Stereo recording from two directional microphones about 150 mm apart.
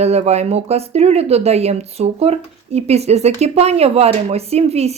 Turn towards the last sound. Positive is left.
turn(degrees=-45)  # may be behind; listen again after turning